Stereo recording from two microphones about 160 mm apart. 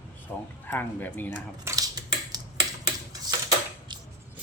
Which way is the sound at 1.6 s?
20° right (ahead or behind).